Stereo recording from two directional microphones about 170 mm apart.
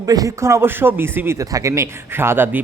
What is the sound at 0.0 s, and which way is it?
Speech, 20° right (ahead or behind).